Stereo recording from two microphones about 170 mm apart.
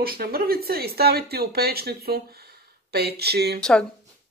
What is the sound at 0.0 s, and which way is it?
Speech, 65° right (ahead or behind).